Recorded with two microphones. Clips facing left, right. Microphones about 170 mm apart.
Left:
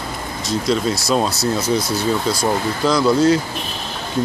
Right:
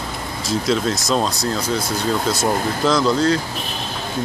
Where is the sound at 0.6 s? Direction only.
Centre (ahead or behind).